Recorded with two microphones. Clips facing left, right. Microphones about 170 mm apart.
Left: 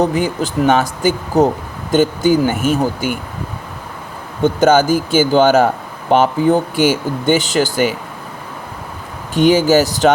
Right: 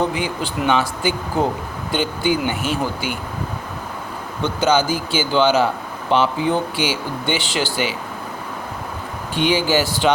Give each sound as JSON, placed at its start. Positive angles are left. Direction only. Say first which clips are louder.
{"t": 0.0, "sound": "speech", "louder": "left 6 dB", "side_deg": 45}
{"t": 4.4, "sound": "speech", "louder": "left 6 dB", "side_deg": 50}
{"t": 9.3, "sound": "speech", "louder": "left 7 dB", "side_deg": 45}